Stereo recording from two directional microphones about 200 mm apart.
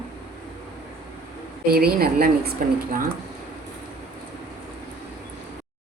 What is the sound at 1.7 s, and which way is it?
Speech, 50° right (ahead or behind).